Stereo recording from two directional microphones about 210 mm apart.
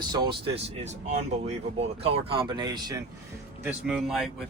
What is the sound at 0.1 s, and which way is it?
Speech, 20° right (ahead or behind).